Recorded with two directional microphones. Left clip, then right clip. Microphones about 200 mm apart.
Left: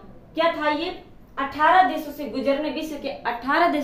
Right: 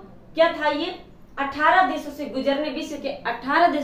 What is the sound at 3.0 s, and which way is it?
Speech, 20° left (ahead or behind).